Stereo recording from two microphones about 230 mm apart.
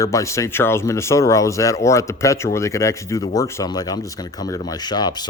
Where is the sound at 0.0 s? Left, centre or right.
Centre.